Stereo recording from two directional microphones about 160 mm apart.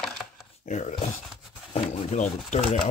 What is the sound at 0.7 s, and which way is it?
Speech, 45° left (ahead or behind).